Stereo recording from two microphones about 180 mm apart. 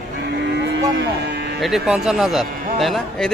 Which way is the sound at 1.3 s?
70° right (ahead or behind).